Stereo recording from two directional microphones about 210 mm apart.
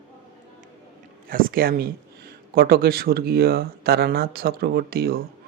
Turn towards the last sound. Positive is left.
turn(degrees=-45)  # may be behind; listen again after turning